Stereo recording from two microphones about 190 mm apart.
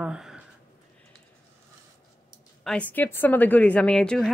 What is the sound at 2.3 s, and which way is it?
Speech, 5° left (ahead or behind).